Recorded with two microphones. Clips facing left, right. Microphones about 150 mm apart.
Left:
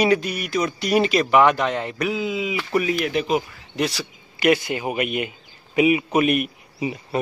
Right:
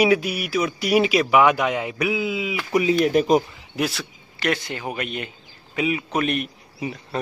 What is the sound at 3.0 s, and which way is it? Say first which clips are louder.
Speech: right 4 dB; 40° right (ahead or behind).